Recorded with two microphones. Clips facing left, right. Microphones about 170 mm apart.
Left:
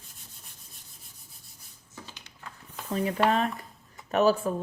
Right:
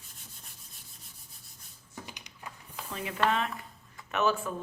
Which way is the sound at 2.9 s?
40° left (ahead or behind).